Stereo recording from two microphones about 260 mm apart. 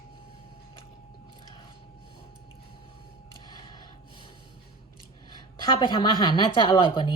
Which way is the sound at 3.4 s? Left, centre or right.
Centre.